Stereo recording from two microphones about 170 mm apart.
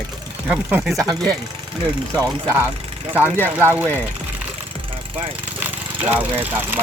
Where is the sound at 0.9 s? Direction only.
20° right (ahead or behind).